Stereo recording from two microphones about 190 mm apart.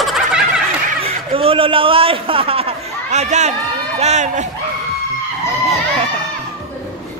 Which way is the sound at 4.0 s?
35° right (ahead or behind).